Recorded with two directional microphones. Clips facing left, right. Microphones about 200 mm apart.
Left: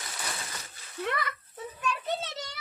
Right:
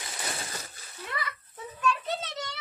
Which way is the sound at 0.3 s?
30° right (ahead or behind).